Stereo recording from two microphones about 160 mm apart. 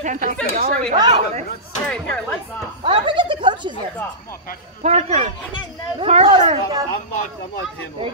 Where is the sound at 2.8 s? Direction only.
30° right (ahead or behind).